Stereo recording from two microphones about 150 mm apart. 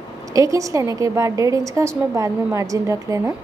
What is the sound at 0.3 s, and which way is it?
A woman's voice, 20° right (ahead or behind).